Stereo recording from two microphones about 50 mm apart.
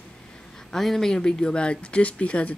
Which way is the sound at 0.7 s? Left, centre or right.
Centre.